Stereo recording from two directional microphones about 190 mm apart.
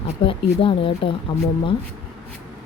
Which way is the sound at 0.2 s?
30° left (ahead or behind).